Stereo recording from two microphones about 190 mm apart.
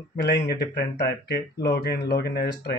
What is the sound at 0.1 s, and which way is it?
Speech, 55° left (ahead or behind).